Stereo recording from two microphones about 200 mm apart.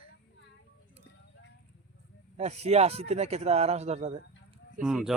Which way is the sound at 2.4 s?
35° right (ahead or behind).